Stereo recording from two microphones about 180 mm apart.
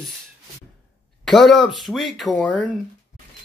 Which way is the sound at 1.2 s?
Centre (ahead or behind).